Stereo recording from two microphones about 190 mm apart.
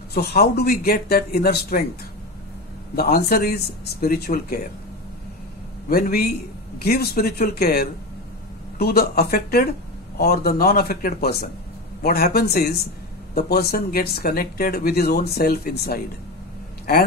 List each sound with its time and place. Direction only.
0.1 s speech: 55° left (ahead or behind)
3.0 s speech: 55° left (ahead or behind)
5.9 s a man's voice: 50° left (ahead or behind)